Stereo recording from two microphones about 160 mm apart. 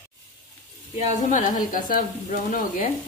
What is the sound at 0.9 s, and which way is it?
Speech, 55° left (ahead or behind).